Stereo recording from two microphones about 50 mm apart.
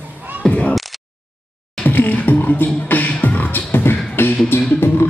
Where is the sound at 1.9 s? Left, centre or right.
Left.